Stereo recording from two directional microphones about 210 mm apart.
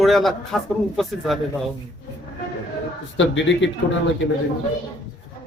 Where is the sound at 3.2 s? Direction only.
60° left (ahead or behind).